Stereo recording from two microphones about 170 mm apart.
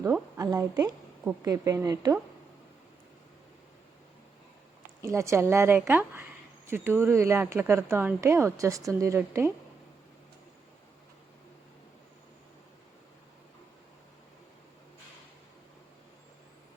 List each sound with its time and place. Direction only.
0.0 s a woman's voice: 15° right (ahead or behind)
5.0 s a woman's voice: 15° right (ahead or behind)